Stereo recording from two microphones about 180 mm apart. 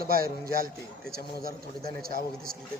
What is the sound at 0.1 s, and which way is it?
Speech, 55° right (ahead or behind).